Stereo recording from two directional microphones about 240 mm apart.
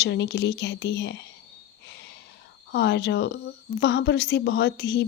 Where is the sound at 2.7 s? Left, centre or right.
Left.